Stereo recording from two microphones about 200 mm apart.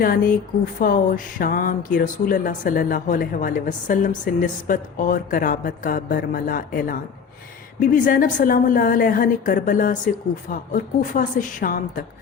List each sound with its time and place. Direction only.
0.0 s a woman's voice: 45° left (ahead or behind)